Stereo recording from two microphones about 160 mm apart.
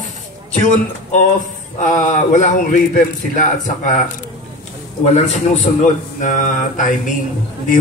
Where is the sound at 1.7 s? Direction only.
50° left (ahead or behind).